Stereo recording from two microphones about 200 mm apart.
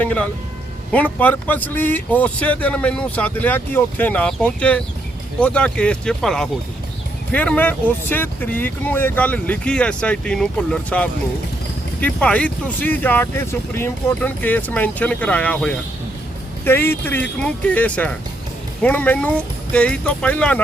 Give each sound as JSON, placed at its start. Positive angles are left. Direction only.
{"t": 0.0, "sound": "a man's voice", "side_deg": 5}